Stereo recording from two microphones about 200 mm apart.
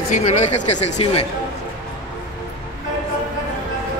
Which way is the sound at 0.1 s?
35° left (ahead or behind).